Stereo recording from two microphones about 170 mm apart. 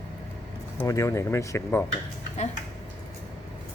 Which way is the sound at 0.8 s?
20° left (ahead or behind).